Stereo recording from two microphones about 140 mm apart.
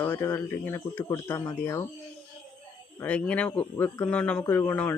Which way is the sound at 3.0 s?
10° left (ahead or behind).